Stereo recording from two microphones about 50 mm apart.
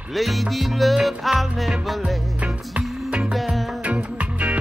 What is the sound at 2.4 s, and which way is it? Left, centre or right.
Music, right.